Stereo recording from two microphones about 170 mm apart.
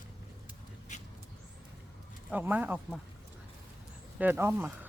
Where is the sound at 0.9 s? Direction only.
45° left (ahead or behind).